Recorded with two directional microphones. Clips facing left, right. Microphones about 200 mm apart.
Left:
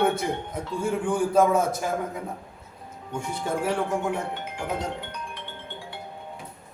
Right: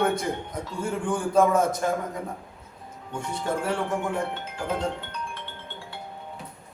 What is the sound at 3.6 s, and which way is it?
Speech, 10° left (ahead or behind).